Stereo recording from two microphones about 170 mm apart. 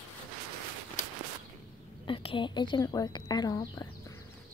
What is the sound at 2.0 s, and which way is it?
Speech, 30° left (ahead or behind).